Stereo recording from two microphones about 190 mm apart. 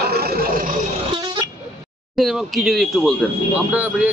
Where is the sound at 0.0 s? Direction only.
55° right (ahead or behind).